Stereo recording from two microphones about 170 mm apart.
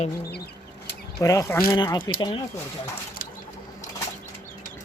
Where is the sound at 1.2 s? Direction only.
20° left (ahead or behind).